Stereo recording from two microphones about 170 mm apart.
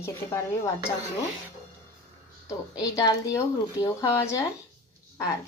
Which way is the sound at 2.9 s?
20° left (ahead or behind).